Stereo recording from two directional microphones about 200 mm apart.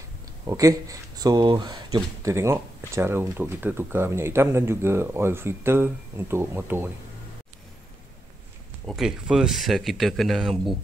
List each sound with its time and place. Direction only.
0.5 s speech: 15° right (ahead or behind)
8.8 s speech: centre (ahead or behind)